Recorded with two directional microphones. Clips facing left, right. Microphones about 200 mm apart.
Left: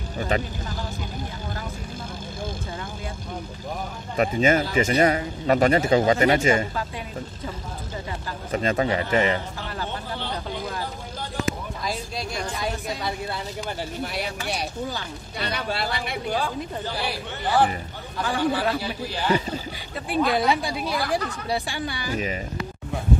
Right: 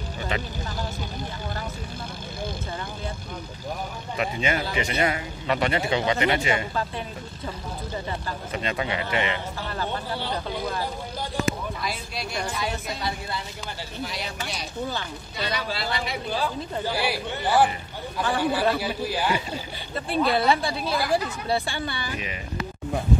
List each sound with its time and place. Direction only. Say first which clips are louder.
0.3 s speech: left 5 dB; 45° left (ahead or behind)
4.2 s speech: left 6 dB; 45° left (ahead or behind)
8.5 s a man's voice: left 6 dB; 40° left (ahead or behind)
14.0 s speech: left 2 dB; 60° left (ahead or behind)
16.8 s a man's voice: right 3 dB; 10° right (ahead or behind)
20.1 s a woman's voice: even; 15° left (ahead or behind)
22.1 s a man's voice: left 6 dB; 35° left (ahead or behind)